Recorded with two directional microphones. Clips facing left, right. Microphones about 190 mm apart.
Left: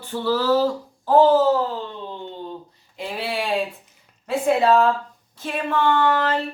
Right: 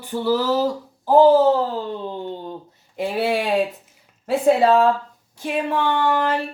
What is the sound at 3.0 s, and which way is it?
Speech, 45° right (ahead or behind).